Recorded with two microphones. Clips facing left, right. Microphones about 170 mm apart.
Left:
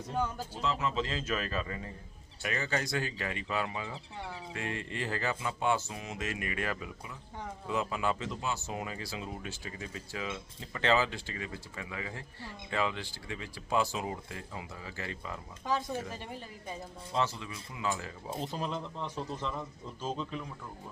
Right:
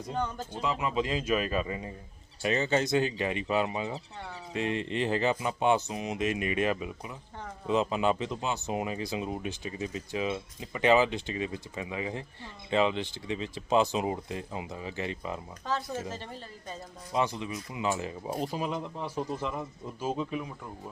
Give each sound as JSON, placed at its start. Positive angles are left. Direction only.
{"t": 0.1, "sound": "a woman's voice", "side_deg": 5}
{"t": 0.6, "sound": "speech", "side_deg": -10}
{"t": 15.6, "sound": "a woman's voice", "side_deg": 15}
{"t": 17.2, "sound": "speech", "side_deg": -15}